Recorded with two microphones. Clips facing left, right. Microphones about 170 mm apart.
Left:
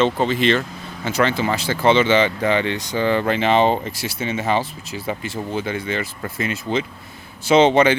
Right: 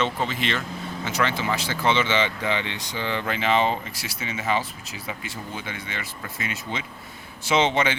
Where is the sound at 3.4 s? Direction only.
30° left (ahead or behind).